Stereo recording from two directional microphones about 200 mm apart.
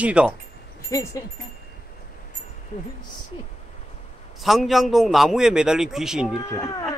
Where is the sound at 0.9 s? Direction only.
15° left (ahead or behind).